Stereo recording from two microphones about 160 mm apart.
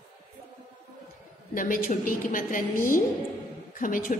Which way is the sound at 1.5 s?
55° left (ahead or behind).